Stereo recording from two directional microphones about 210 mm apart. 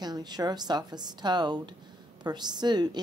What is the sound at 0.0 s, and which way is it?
A woman's voice, 20° right (ahead or behind).